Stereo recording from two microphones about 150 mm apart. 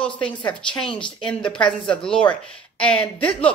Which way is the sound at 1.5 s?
5° left (ahead or behind).